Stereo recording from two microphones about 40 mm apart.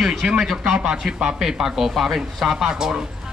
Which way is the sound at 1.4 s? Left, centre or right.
Centre.